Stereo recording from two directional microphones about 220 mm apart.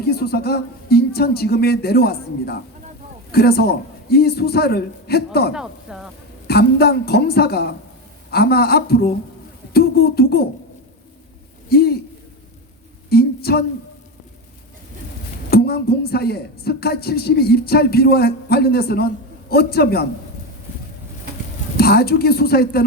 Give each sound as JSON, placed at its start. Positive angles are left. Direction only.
{"t": 0.0, "sound": "speech", "side_deg": 45}
{"t": 5.5, "sound": "speech", "side_deg": 0}
{"t": 6.5, "sound": "speech", "side_deg": 45}
{"t": 11.7, "sound": "speech", "side_deg": 45}
{"t": 13.1, "sound": "a sound", "side_deg": 45}
{"t": 15.4, "sound": "speech", "side_deg": 45}
{"t": 21.8, "sound": "speech", "side_deg": 45}